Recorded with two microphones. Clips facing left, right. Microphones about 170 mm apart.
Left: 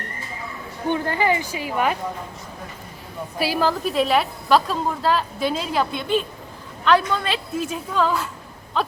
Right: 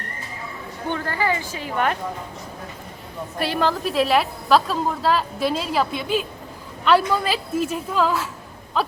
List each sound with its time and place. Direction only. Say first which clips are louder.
0.9 s a woman's voice: left 3 dB; 20° left (ahead or behind)
3.3 s a woman's voice: left 1 dB; 5° left (ahead or behind)